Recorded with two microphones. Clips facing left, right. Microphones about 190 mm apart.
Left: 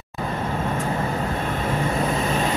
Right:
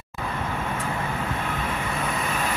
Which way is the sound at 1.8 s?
35° left (ahead or behind).